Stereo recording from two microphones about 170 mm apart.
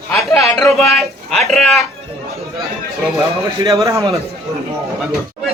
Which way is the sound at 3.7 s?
20° right (ahead or behind).